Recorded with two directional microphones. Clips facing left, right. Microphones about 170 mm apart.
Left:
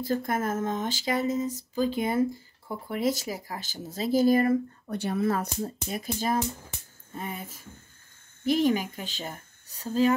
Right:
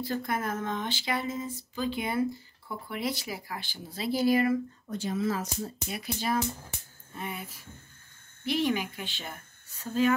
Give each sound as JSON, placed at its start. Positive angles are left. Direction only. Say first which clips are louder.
{"t": 0.0, "sound": "speech", "louder": "left 4 dB", "side_deg": 45}
{"t": 4.9, "sound": "speech", "louder": "left 3 dB", "side_deg": 60}
{"t": 5.6, "sound": "a woman's voice", "louder": "left 4 dB", "side_deg": 40}